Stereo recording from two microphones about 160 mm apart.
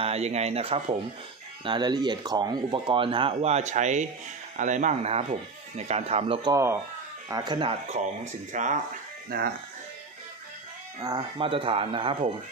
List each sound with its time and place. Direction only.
0.0 s speech: 40° right (ahead or behind)
6.5 s speech: 15° right (ahead or behind); by 8.0 s 30° right (ahead or behind)
8.0 s speech: 50° right (ahead or behind)
11.0 s speech: 20° right (ahead or behind)
11.3 s speech: 35° right (ahead or behind)